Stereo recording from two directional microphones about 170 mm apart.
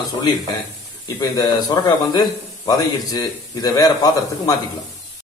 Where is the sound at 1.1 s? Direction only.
20° left (ahead or behind).